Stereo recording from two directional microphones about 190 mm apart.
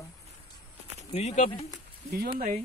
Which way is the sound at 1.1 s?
35° left (ahead or behind).